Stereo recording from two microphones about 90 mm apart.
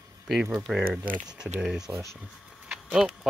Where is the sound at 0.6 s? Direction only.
10° right (ahead or behind).